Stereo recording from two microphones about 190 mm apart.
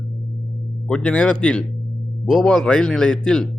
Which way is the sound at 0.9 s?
5° left (ahead or behind).